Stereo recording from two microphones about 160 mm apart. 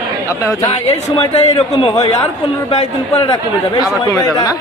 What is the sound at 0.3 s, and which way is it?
A man's voice, 20° left (ahead or behind).